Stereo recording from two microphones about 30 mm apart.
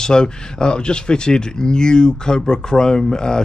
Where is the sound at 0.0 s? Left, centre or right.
Left.